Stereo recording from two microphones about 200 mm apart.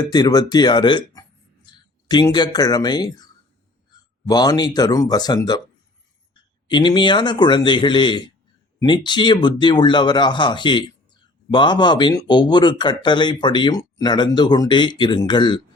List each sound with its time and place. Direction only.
0.0 s speech: 20° left (ahead or behind)
4.3 s speech: 20° left (ahead or behind)
6.7 s speech: 25° left (ahead or behind)